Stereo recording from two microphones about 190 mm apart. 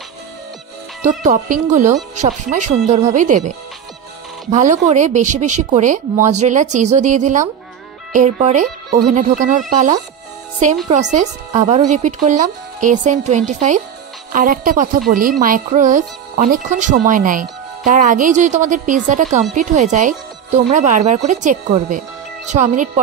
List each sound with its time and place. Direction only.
1.0 s speech: 40° right (ahead or behind)